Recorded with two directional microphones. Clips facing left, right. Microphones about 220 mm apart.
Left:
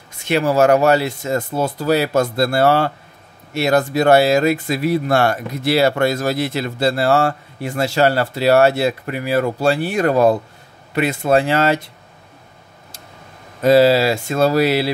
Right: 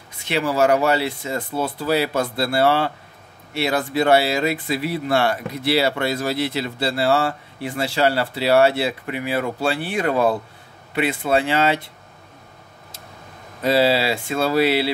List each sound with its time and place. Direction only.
0.3 s speech: 45° left (ahead or behind)
13.6 s speech: 45° left (ahead or behind)